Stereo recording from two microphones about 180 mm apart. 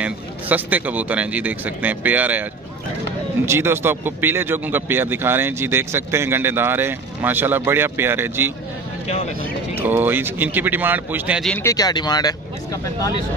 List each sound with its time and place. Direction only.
0.0 s speech: 10° right (ahead or behind)
3.4 s speech: 15° right (ahead or behind)
9.8 s speech: 10° right (ahead or behind)
11.4 s speech: 10° left (ahead or behind)
11.7 s speech: 20° left (ahead or behind)